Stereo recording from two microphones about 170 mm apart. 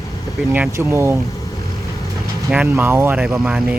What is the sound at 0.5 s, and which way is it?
Speech, 10° right (ahead or behind).